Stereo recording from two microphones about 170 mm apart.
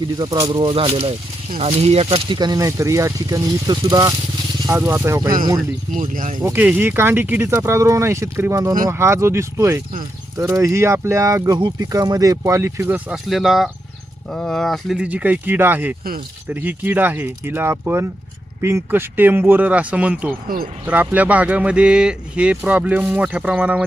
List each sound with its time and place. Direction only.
0.2 s speech: 25° right (ahead or behind)
6.0 s speech: 50° right (ahead or behind)
6.4 s speech: 10° right (ahead or behind)
13.2 s speech: centre (ahead or behind)